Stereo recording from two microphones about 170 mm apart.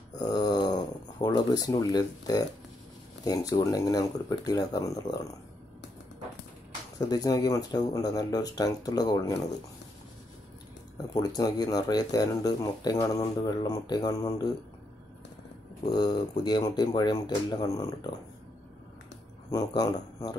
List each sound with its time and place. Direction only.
0.2 s speech: 25° left (ahead or behind)
7.0 s speech: 20° left (ahead or behind)
11.1 s speech: 20° left (ahead or behind)
15.8 s speech: 25° left (ahead or behind)
19.5 s speech: 20° left (ahead or behind)